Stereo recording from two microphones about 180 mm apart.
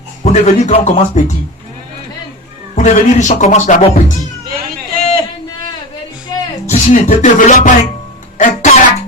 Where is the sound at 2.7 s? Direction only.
40° left (ahead or behind).